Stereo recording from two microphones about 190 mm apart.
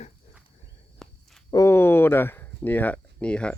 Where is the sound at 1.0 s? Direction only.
Centre (ahead or behind).